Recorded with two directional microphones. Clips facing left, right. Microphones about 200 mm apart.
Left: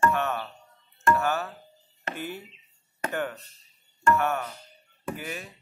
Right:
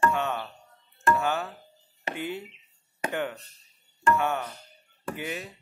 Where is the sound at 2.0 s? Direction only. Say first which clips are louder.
Right 2 dB; 15° right (ahead or behind).